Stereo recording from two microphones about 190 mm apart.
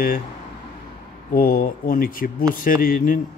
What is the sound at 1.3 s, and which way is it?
Speech, 50° left (ahead or behind).